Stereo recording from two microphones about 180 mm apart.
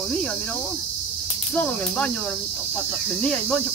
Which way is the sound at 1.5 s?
5° left (ahead or behind).